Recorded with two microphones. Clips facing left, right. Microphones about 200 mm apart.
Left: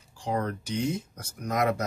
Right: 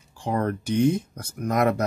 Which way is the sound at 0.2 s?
55° right (ahead or behind).